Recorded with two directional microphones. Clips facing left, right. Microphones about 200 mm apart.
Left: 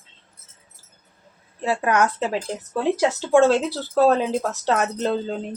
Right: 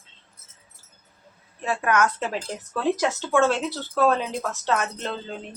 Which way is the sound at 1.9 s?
30° left (ahead or behind).